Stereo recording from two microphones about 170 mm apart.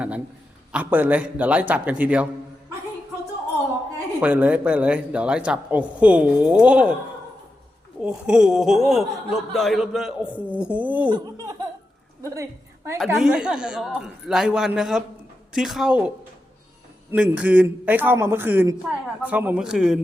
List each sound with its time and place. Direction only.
0.7 s a man's voice: 10° right (ahead or behind)
4.2 s a man's voice: 10° right (ahead or behind)
8.0 s a man's voice: 5° right (ahead or behind)
11.1 s a woman's voice: 20° right (ahead or behind)
13.0 s a man's voice: 5° right (ahead or behind)